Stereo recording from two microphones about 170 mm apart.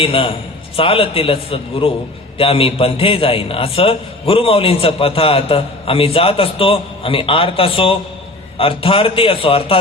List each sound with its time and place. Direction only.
0.0 s a man's voice: 35° left (ahead or behind)